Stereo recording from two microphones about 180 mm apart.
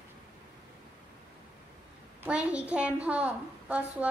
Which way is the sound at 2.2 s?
5° right (ahead or behind).